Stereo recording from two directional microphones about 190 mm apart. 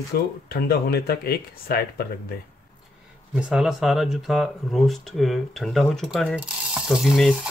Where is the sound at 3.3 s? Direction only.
5° right (ahead or behind).